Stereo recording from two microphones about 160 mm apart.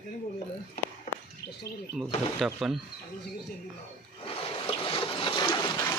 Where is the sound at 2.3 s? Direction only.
Centre (ahead or behind).